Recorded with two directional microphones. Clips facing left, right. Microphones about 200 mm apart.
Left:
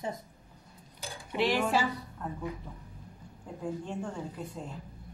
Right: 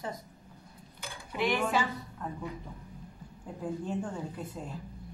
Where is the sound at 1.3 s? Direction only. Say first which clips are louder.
Left 2 dB; 30° left (ahead or behind).